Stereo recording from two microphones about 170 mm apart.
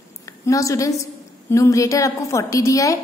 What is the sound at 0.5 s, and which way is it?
A woman's voice, 20° left (ahead or behind).